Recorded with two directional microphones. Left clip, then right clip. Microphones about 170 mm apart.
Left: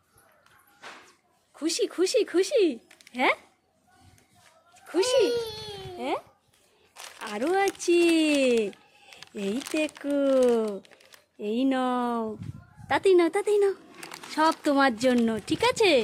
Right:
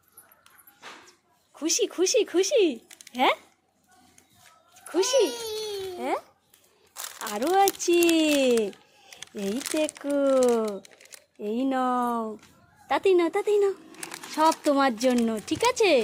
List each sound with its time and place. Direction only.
1.5 s speech: centre (ahead or behind)
4.9 s cat: 5° left (ahead or behind)
7.2 s speech: 5° left (ahead or behind)
9.8 s speech: 10° left (ahead or behind)
11.3 s speech: 15° left (ahead or behind)